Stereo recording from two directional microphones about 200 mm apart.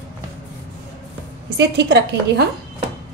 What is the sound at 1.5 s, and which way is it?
Speech, 55° right (ahead or behind).